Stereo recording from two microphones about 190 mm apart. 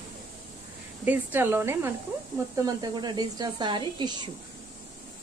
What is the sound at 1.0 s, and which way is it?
Speech, 10° right (ahead or behind).